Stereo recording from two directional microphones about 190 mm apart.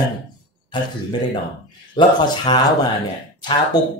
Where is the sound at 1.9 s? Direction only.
25° left (ahead or behind).